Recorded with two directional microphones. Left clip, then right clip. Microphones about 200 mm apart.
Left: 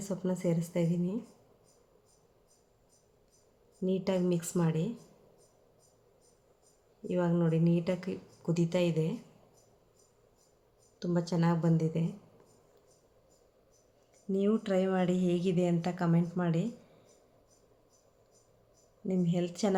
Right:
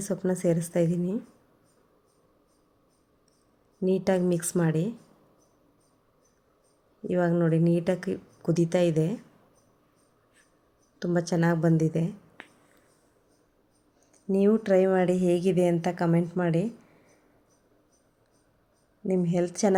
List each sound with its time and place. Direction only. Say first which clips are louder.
0.0 s speech: right 7 dB; 30° right (ahead or behind)
3.8 s speech: right 6 dB; 30° right (ahead or behind)
7.1 s speech: right 6 dB; 30° right (ahead or behind)
11.0 s speech: right 6 dB; 30° right (ahead or behind)
14.3 s speech: right 8 dB; 30° right (ahead or behind)
19.0 s a woman's voice: right 7 dB; 30° right (ahead or behind)